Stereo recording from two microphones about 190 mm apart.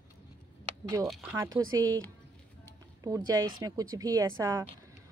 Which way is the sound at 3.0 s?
20° right (ahead or behind).